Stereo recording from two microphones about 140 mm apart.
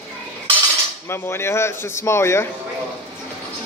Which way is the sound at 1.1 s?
15° left (ahead or behind).